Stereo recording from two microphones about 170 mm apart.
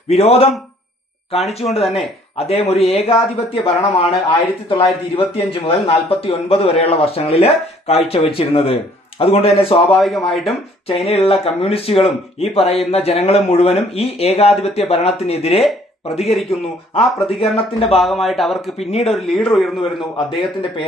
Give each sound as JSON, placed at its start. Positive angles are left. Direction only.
{"t": 0.1, "sound": "speech", "side_deg": 35}
{"t": 9.9, "sound": "speech", "side_deg": 0}
{"t": 10.8, "sound": "speech", "side_deg": 35}
{"t": 16.3, "sound": "speech", "side_deg": 0}
{"t": 17.2, "sound": "speech", "side_deg": 35}
{"t": 18.0, "sound": "speech", "side_deg": 0}
{"t": 18.9, "sound": "speech", "side_deg": 40}
{"t": 19.1, "sound": "speech", "side_deg": 0}
{"t": 20.1, "sound": "speech", "side_deg": 30}